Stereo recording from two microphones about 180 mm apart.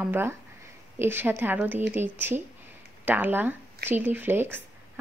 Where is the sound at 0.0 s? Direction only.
10° right (ahead or behind).